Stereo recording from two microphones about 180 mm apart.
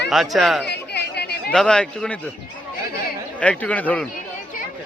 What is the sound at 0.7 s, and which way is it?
Chatter, 65° left (ahead or behind).